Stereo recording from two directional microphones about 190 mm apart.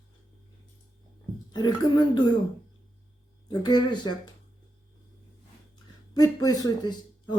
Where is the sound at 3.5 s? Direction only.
20° left (ahead or behind).